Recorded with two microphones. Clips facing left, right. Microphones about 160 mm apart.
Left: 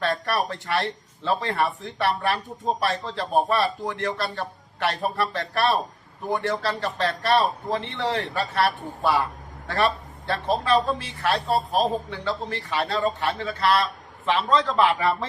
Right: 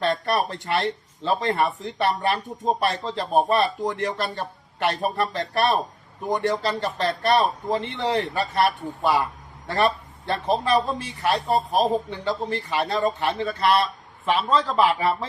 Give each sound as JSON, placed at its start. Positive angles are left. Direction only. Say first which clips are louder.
{"t": 0.0, "sound": "a man's voice", "louder": "right 2 dB", "side_deg": -20}